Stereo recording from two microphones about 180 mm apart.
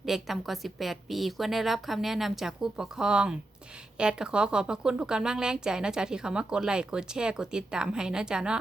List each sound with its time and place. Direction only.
0.0 s a woman's voice: centre (ahead or behind)